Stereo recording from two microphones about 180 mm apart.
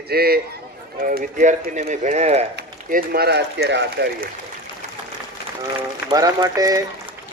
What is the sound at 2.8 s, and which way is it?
A man's voice, 55° right (ahead or behind).